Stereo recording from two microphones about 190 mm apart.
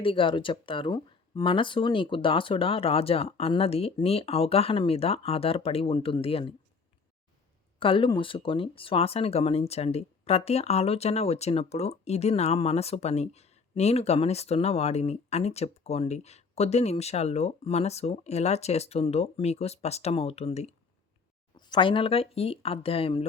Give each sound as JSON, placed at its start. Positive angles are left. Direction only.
{"t": 0.0, "sound": "speech", "side_deg": 25}
{"t": 7.8, "sound": "speech", "side_deg": 25}